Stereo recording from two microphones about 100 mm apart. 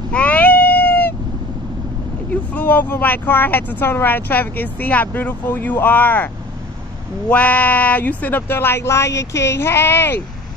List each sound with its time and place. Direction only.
0.1 s cat: 15° left (ahead or behind)
2.5 s speech: 15° left (ahead or behind)